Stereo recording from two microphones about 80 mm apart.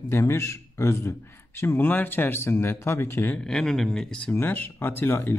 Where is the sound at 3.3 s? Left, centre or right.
Centre.